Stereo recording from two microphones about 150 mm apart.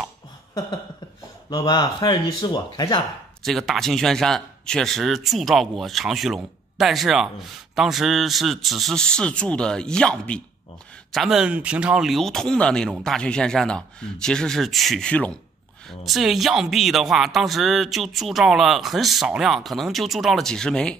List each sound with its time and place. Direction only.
1.5 s speech: 25° left (ahead or behind)
3.4 s speech: centre (ahead or behind)